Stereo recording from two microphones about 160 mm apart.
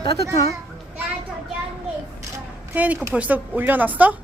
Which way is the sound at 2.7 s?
10° right (ahead or behind).